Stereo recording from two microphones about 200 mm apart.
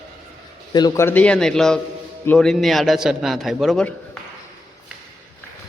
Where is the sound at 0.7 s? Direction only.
15° left (ahead or behind).